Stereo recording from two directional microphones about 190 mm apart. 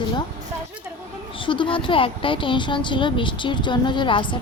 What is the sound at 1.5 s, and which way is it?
A woman's voice, 25° left (ahead or behind).